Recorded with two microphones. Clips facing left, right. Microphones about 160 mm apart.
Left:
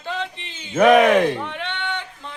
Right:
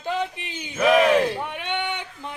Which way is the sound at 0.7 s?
65° left (ahead or behind).